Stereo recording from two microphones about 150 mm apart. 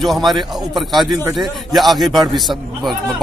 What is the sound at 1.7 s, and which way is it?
Speech, centre (ahead or behind).